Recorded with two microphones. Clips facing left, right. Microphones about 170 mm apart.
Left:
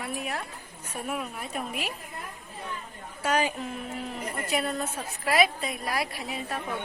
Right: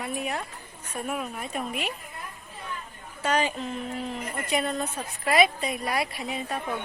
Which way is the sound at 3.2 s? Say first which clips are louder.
Right 1 dB; 10° left (ahead or behind).